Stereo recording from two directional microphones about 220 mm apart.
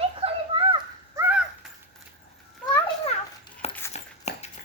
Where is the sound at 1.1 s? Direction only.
5° right (ahead or behind).